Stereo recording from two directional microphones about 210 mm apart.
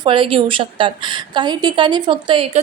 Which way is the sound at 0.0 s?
25° right (ahead or behind).